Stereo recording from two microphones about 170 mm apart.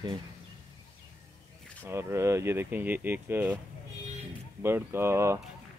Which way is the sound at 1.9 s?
15° right (ahead or behind).